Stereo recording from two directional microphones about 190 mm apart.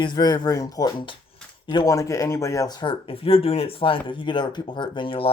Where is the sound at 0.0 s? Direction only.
25° left (ahead or behind).